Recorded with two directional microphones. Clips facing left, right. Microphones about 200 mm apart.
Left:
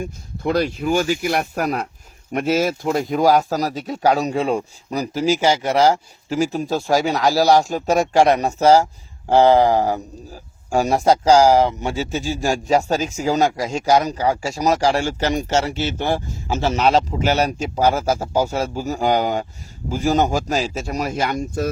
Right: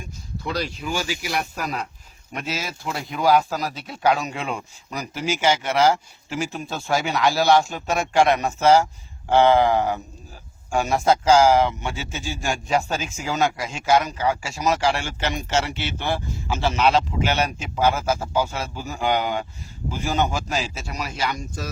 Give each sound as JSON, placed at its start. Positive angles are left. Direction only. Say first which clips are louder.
{"t": 0.0, "sound": "a man's voice", "louder": "left 8 dB", "side_deg": 55}